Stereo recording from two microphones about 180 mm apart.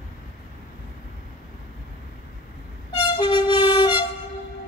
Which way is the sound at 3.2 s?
25° left (ahead or behind).